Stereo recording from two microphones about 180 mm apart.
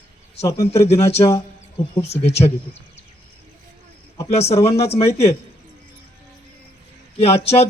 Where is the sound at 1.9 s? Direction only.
35° left (ahead or behind).